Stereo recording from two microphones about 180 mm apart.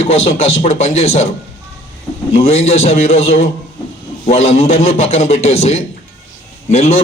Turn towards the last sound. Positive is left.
turn(degrees=35)  # may be behind; listen again after turning